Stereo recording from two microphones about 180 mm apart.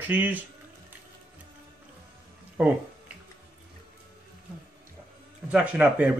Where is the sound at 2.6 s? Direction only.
10° right (ahead or behind).